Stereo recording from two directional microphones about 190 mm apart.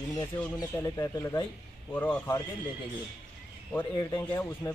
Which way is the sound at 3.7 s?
20° left (ahead or behind).